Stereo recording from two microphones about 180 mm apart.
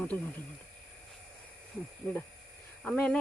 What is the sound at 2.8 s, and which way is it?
Speech, 5° left (ahead or behind).